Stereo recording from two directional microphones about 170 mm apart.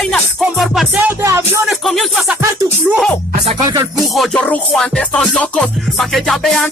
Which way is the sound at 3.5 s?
20° right (ahead or behind).